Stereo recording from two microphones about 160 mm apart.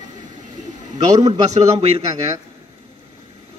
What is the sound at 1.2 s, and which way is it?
Speech, 45° right (ahead or behind).